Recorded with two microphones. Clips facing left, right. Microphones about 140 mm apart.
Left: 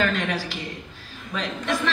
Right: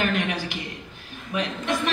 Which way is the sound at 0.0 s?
15° right (ahead or behind).